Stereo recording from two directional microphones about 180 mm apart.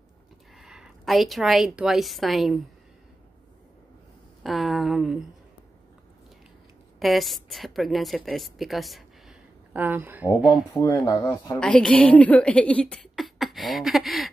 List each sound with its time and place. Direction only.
0.6 s a woman's voice: centre (ahead or behind)
4.4 s a woman's voice: centre (ahead or behind)
7.0 s a woman's voice: centre (ahead or behind)
9.8 s speech: 10° right (ahead or behind)
10.7 s speech: 20° left (ahead or behind)
11.6 s speech: 5° left (ahead or behind)